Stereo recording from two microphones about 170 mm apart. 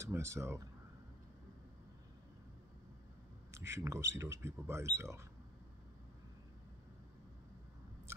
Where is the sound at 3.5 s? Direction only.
15° right (ahead or behind).